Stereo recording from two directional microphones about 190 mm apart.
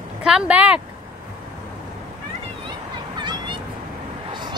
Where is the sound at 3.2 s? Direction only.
25° right (ahead or behind).